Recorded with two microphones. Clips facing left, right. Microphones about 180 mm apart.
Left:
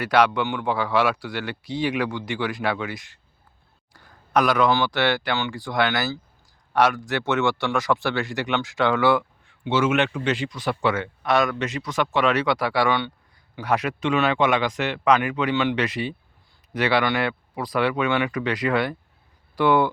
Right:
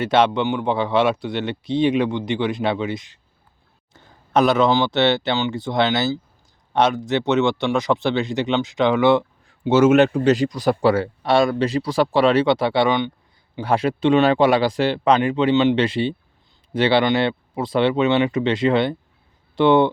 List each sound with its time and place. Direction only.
0.0 s speech: 25° right (ahead or behind)
9.5 s speech: 40° right (ahead or behind); by 13.1 s 20° right (ahead or behind)
13.6 s speech: 30° right (ahead or behind)